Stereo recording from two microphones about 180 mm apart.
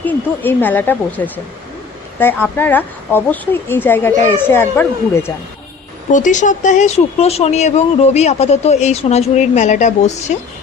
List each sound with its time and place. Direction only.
0.0 s speech: 10° left (ahead or behind)
6.1 s speech: 45° left (ahead or behind)